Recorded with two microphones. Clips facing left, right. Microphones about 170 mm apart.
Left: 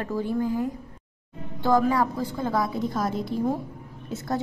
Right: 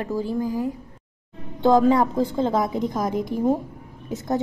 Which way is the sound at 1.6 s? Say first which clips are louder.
Right 5 dB; 20° right (ahead or behind).